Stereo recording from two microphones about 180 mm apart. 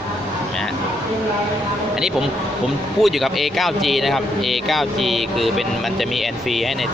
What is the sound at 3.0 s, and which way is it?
Speech, centre (ahead or behind).